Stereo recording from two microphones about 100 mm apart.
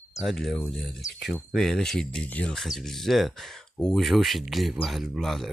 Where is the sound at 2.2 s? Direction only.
15° left (ahead or behind).